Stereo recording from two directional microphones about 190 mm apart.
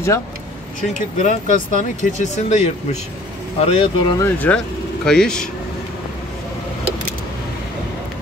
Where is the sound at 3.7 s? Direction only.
30° left (ahead or behind).